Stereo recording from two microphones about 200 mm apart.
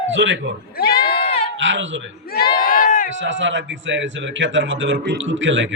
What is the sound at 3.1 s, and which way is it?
Speech, 70° right (ahead or behind).